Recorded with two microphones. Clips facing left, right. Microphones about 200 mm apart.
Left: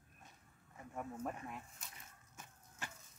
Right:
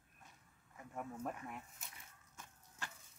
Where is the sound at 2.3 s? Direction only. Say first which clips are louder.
Even; 15° left (ahead or behind).